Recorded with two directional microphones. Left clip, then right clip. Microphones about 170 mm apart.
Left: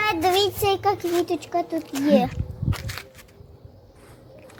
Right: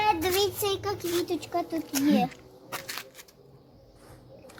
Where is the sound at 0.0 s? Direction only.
80° left; by 1.6 s 50° left (ahead or behind).